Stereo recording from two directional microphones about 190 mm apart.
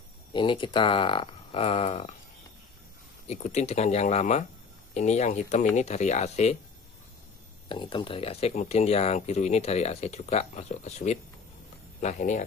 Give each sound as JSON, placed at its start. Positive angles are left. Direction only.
{"t": 0.3, "sound": "speech", "side_deg": 25}
{"t": 3.3, "sound": "speech", "side_deg": 35}
{"t": 7.6, "sound": "speech", "side_deg": 25}